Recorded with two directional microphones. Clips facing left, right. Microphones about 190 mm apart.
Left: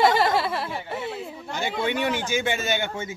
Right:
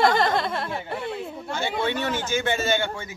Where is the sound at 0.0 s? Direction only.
5° left (ahead or behind).